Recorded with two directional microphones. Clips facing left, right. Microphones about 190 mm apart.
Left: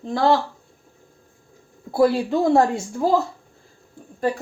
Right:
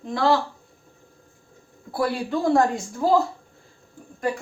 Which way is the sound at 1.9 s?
25° left (ahead or behind).